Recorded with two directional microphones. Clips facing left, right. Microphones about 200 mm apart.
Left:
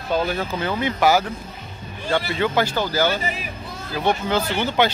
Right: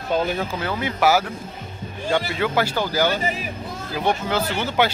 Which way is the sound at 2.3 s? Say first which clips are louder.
Left 1 dB; 5° right (ahead or behind).